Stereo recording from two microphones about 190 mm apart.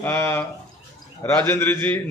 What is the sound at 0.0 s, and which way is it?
A man's voice, 15° left (ahead or behind).